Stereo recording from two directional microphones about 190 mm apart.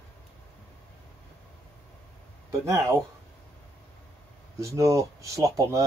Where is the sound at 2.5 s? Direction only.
15° right (ahead or behind).